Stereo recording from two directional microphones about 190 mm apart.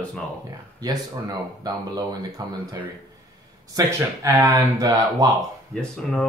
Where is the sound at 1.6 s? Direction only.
20° right (ahead or behind).